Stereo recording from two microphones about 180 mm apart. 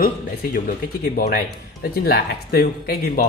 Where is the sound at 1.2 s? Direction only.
55° left (ahead or behind).